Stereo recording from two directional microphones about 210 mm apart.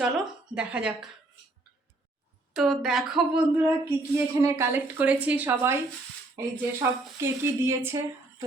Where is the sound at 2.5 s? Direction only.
Centre (ahead or behind).